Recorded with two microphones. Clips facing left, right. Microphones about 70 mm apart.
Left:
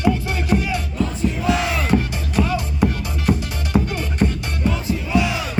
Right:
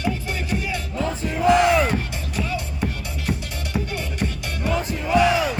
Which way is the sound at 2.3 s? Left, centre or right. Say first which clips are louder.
Left 7 dB; left.